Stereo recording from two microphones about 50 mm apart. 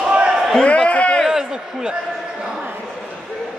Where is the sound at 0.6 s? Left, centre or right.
Left.